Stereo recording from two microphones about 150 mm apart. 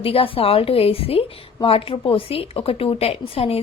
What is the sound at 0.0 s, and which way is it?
A woman's voice, 40° left (ahead or behind).